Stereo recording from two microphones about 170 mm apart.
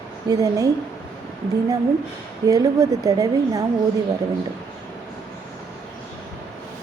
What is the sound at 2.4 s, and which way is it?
A woman's voice, 20° right (ahead or behind).